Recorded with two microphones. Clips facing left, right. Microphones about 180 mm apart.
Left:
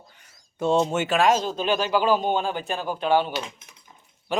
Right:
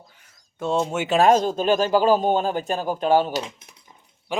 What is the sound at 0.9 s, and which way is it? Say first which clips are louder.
Speech: left 1 dB; 10° right (ahead or behind).